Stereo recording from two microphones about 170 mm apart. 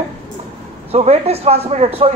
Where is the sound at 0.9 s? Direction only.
35° right (ahead or behind).